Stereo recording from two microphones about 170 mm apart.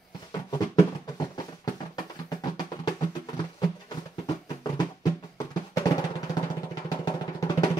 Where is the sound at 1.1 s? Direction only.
20° left (ahead or behind).